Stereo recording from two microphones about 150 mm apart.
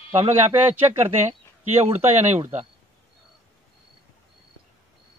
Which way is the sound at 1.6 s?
45° right (ahead or behind).